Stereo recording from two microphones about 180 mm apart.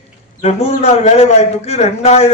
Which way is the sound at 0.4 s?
35° left (ahead or behind).